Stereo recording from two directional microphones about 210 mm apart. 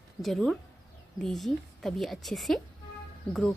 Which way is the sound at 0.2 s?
Centre (ahead or behind).